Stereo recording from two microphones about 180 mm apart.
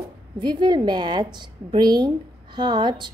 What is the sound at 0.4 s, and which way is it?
A woman's voice, 25° right (ahead or behind).